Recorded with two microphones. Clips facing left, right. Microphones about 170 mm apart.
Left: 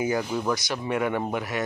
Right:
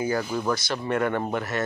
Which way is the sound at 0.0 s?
15° left (ahead or behind).